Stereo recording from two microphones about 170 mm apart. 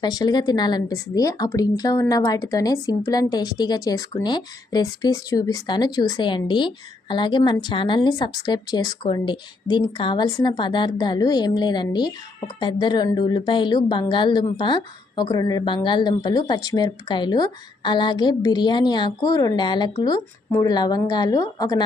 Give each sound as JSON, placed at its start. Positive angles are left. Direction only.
{"t": 0.0, "sound": "speech", "side_deg": 25}